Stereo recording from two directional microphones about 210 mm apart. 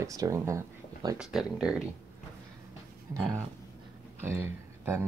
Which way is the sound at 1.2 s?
5° right (ahead or behind).